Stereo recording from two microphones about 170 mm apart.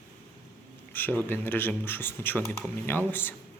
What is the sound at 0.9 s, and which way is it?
A man's voice, 10° left (ahead or behind).